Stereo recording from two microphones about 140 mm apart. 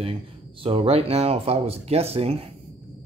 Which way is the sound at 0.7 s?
45° right (ahead or behind).